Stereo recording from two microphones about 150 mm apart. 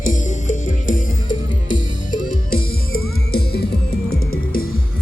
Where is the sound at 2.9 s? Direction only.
90° left.